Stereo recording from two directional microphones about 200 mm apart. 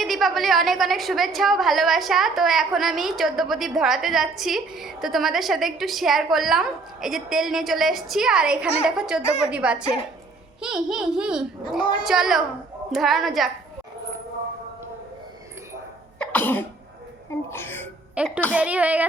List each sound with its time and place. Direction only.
0.0 s a woman's voice: centre (ahead or behind)
9.2 s a woman's voice: 35° left (ahead or behind)
9.5 s a woman's voice: 5° right (ahead or behind)
11.8 s speech: 25° left (ahead or behind)
12.0 s a woman's voice: centre (ahead or behind)
16.1 s cough: 5° left (ahead or behind)
17.5 s speech: 10° left (ahead or behind)
18.2 s a woman's voice: 5° right (ahead or behind)